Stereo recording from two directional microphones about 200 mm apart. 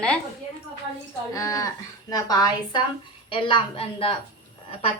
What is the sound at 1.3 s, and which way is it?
A woman's voice, 15° left (ahead or behind).